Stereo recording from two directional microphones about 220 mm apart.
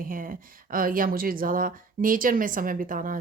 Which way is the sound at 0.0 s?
40° right (ahead or behind).